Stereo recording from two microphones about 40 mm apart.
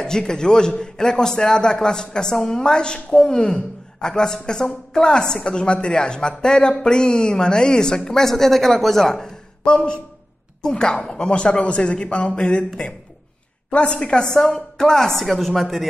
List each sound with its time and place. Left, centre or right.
0.0 s a man's voice: centre
13.7 s a woman's voice: left
14.3 s a man's voice: centre